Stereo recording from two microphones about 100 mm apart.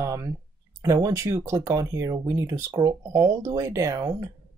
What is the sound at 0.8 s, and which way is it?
Speech, 35° right (ahead or behind).